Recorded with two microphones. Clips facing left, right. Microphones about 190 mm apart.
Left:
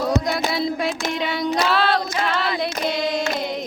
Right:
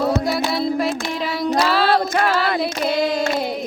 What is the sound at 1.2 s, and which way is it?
Child singing, centre (ahead or behind).